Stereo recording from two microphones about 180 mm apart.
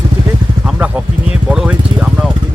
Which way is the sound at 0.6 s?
5° right (ahead or behind).